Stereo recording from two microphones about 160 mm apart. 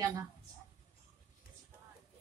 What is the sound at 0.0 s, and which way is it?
Speech, 20° right (ahead or behind).